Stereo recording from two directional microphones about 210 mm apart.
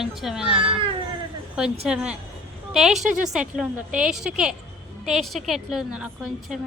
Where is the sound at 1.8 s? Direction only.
5° right (ahead or behind).